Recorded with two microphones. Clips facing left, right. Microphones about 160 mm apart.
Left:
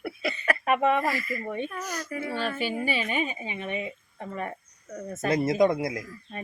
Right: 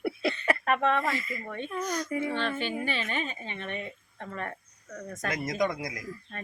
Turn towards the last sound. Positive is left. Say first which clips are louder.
# left 7 dB
turn(degrees=25)  # may be behind; listen again after turning